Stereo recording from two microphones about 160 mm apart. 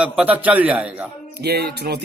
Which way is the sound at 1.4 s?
90° right.